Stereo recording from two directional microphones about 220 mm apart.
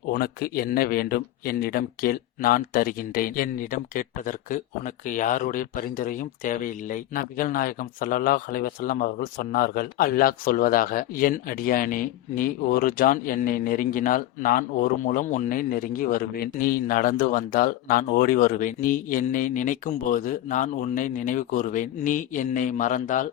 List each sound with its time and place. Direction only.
0.1 s speech: 45° left (ahead or behind)